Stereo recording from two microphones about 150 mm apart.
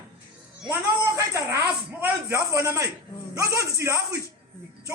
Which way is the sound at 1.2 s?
20° right (ahead or behind).